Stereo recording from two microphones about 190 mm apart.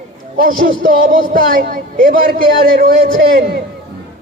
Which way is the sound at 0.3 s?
45° right (ahead or behind).